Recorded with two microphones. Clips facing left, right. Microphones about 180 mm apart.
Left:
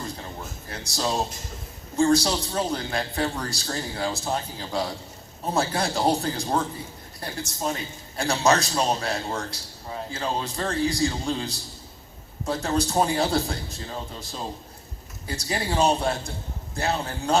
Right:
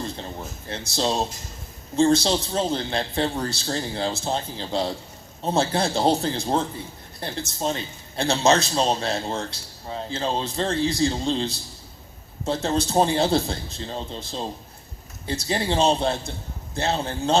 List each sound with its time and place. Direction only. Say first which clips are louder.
0.7 s a man's voice: right 3 dB; 25° right (ahead or behind)